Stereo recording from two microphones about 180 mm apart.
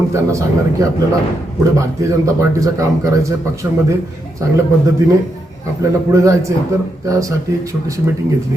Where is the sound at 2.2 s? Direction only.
15° right (ahead or behind).